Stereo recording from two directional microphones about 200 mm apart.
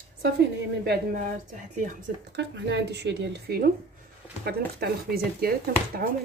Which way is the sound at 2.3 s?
60° right (ahead or behind).